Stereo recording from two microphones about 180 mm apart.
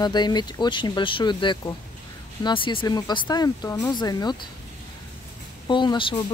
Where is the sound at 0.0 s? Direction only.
25° left (ahead or behind).